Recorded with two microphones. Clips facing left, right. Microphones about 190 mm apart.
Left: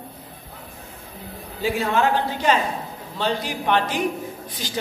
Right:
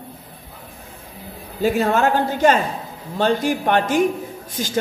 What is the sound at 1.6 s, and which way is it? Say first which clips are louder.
A woman's voice: right 4 dB; 45° right (ahead or behind).